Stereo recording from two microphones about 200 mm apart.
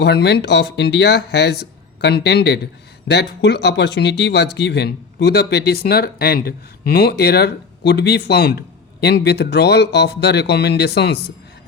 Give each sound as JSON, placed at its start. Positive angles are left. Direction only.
{"t": 0.0, "sound": "speech", "side_deg": 60}